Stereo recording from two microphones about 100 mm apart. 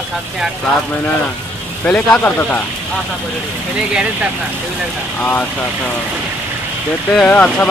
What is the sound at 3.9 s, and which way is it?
Speech, 10° right (ahead or behind).